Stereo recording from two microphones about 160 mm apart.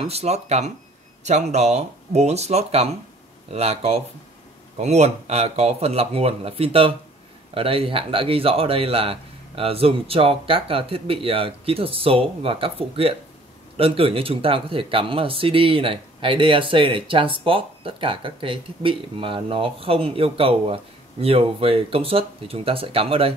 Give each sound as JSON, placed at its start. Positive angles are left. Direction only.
{"t": 0.0, "sound": "speech", "side_deg": -40}